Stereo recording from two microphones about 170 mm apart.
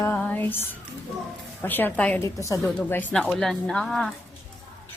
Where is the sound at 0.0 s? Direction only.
10° left (ahead or behind).